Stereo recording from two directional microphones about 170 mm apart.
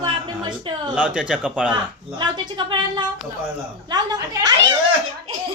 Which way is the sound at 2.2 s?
25° right (ahead or behind).